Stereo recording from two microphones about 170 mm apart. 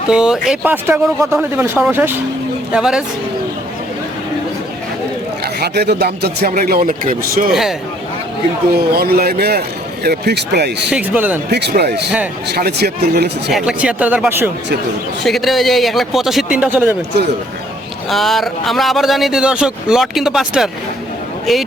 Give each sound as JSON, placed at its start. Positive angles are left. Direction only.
{"t": 0.1, "sound": "a man's voice", "side_deg": -5}
{"t": 5.5, "sound": "speech", "side_deg": -70}
{"t": 7.5, "sound": "a man's voice", "side_deg": 0}
{"t": 8.9, "sound": "speech", "side_deg": -65}
{"t": 10.9, "sound": "speech", "side_deg": -10}
{"t": 11.5, "sound": "speech", "side_deg": -75}
{"t": 13.5, "sound": "speech", "side_deg": -5}
{"t": 15.2, "sound": "a man's voice", "side_deg": 0}
{"t": 18.1, "sound": "a man's voice", "side_deg": 0}